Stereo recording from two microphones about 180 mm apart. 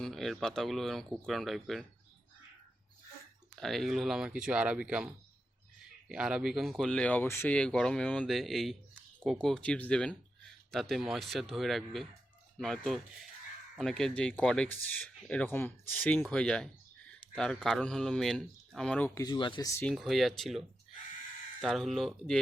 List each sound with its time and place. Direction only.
0.0 s speech: centre (ahead or behind)
3.5 s speech: centre (ahead or behind)
19.0 s speech: 20° left (ahead or behind)
19.8 s speech: centre (ahead or behind)